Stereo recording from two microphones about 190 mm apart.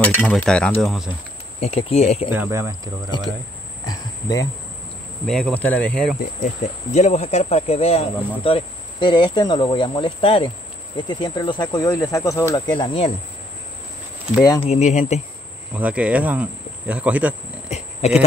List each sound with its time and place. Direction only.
0.0 s a sound: 5° left (ahead or behind)
1.6 s speech: 30° left (ahead or behind)
2.3 s speech: 15° right (ahead or behind)
3.8 s cricket: 20° left (ahead or behind)
5.2 s a sound: 5° left (ahead or behind)
6.6 s speech: 35° left (ahead or behind)
14.4 s speech: 20° left (ahead or behind)
14.7 s speech: 35° left (ahead or behind)
15.7 s speech: 5° right (ahead or behind)
17.6 s a sound: 35° left (ahead or behind)